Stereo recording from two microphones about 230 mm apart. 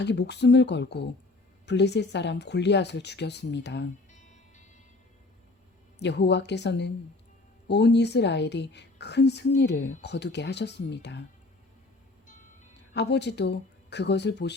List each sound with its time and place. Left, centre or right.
0.0 s speech: left
6.0 s speech: left
12.9 s speech: left